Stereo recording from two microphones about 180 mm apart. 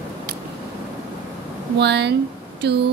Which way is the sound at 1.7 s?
70° right (ahead or behind).